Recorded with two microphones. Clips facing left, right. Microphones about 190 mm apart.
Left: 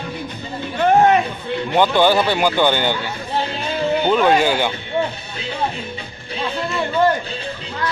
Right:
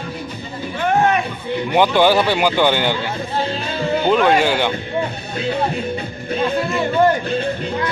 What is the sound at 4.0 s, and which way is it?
Speech, centre (ahead or behind).